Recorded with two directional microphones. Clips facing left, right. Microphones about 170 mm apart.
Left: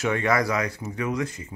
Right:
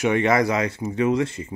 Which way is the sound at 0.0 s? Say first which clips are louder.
Right 4 dB; 20° right (ahead or behind).